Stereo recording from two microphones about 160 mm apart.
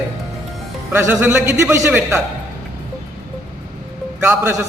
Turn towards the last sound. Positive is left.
turn(degrees=-15)  # may be behind; listen again after turning